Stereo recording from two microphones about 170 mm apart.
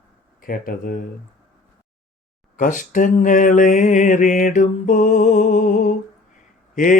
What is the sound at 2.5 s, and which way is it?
Speech, 50° left (ahead or behind).